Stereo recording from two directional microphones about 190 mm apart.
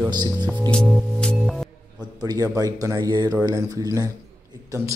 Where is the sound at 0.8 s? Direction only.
Centre (ahead or behind).